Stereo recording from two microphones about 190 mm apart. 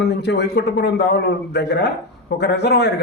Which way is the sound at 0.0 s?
65° left (ahead or behind).